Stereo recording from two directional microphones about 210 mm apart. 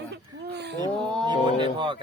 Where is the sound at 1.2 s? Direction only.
25° right (ahead or behind).